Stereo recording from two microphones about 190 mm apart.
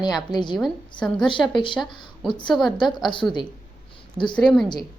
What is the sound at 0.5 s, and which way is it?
Speech, centre (ahead or behind).